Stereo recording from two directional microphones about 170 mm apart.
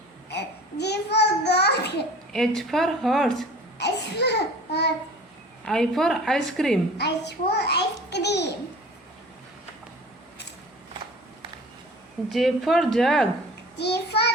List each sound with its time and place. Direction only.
0.3 s a sound: 80° left
2.3 s a woman's voice: centre (ahead or behind)
3.8 s a sound: 85° left
5.6 s a woman's voice: 5° left (ahead or behind)
6.9 s a child's voice: 80° left
12.3 s a woman's voice: centre (ahead or behind)
13.7 s child singing: 75° left (ahead or behind)